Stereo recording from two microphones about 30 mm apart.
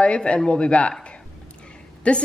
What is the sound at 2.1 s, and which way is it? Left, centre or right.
Speech, left.